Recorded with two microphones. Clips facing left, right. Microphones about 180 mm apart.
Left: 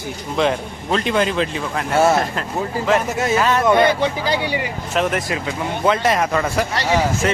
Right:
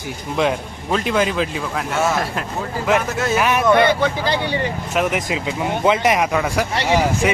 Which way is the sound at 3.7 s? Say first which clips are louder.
Right 2 dB; 15° left (ahead or behind).